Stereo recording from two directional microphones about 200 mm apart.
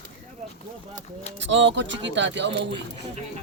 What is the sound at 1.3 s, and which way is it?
Speech, 65° right (ahead or behind).